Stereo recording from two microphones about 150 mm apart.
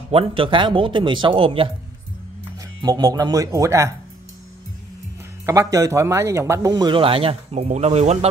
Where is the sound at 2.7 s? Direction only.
25° right (ahead or behind).